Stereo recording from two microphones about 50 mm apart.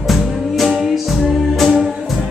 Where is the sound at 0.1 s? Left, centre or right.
Centre.